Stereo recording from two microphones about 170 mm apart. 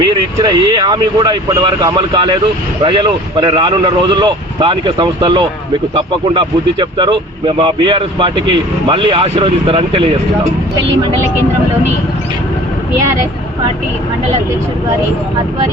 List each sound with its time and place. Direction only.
0.0 s speech: 25° right (ahead or behind)